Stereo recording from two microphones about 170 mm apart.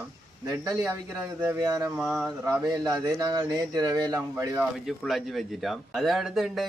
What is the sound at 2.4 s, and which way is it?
Speech, 20° right (ahead or behind).